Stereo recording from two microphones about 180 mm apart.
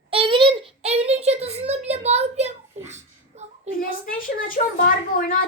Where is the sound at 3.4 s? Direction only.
40° right (ahead or behind).